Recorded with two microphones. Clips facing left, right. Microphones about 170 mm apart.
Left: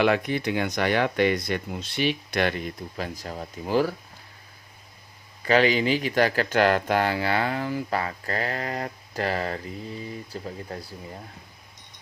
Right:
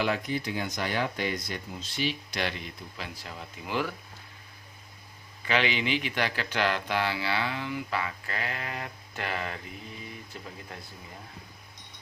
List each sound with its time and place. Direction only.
0.0 s speech: 70° left (ahead or behind); by 3.9 s 40° left (ahead or behind)
5.4 s speech: 40° left (ahead or behind)